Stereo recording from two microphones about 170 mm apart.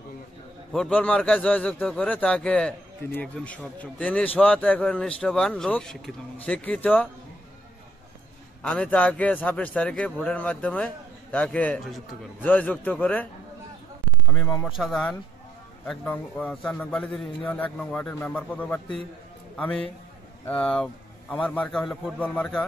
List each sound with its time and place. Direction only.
0.7 s a man's voice: 5° left (ahead or behind)
8.6 s a man's voice: 5° left (ahead or behind)
14.7 s a man's voice: centre (ahead or behind)